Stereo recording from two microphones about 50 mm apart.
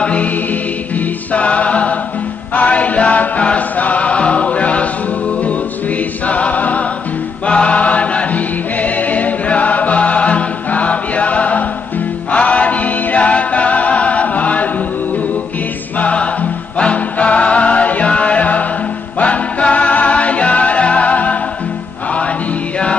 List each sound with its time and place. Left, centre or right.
0.0 s music: left
6.2 s music: left
16.0 s music: left